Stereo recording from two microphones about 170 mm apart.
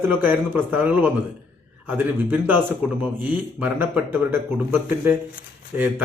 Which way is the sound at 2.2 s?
10° right (ahead or behind).